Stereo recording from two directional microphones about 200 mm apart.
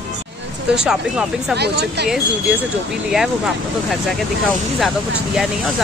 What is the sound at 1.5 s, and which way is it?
Speech, 55° right (ahead or behind).